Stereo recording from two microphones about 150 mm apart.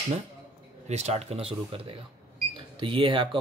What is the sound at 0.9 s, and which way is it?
Speech, 45° right (ahead or behind).